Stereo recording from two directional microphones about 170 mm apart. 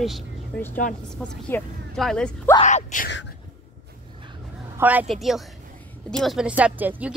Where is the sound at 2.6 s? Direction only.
45° left (ahead or behind).